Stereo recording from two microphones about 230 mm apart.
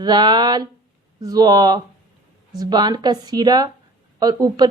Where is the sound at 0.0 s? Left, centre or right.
Centre.